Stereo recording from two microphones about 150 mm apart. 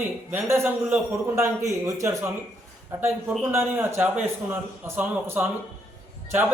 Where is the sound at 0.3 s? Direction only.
15° right (ahead or behind).